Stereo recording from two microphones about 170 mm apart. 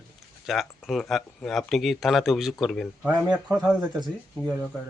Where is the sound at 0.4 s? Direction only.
Centre (ahead or behind).